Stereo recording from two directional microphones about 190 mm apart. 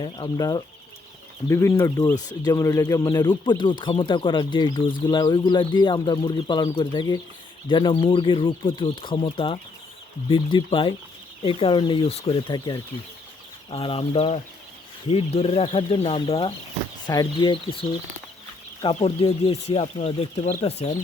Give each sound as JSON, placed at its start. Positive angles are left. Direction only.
{"t": 0.0, "sound": "speech", "side_deg": 20}